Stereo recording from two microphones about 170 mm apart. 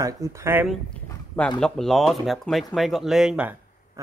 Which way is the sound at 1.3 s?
5° left (ahead or behind).